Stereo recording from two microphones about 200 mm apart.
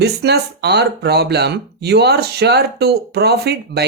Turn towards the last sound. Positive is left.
turn(degrees=-55)  # may be behind; listen again after turning